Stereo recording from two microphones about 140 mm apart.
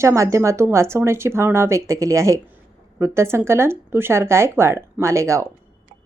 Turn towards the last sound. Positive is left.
turn(degrees=-20)  # may be behind; listen again after turning